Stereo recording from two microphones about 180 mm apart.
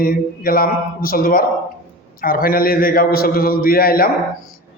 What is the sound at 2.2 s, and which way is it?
A man's voice, 55° left (ahead or behind).